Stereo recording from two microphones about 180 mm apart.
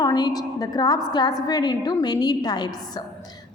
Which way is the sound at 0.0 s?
20° left (ahead or behind).